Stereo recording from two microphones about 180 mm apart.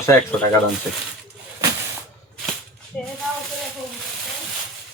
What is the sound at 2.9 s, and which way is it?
Speech, 5° left (ahead or behind).